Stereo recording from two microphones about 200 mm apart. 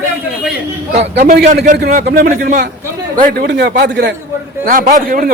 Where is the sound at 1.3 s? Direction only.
55° right (ahead or behind).